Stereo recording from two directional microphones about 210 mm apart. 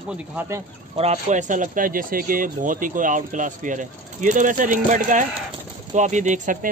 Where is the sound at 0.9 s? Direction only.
30° right (ahead or behind).